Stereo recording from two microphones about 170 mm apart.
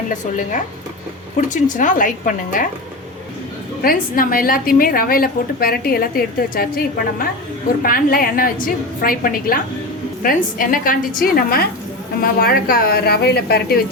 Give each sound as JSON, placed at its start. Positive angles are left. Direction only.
{"t": 1.4, "sound": "a woman's voice", "side_deg": 50}
{"t": 3.8, "sound": "a woman's voice", "side_deg": 55}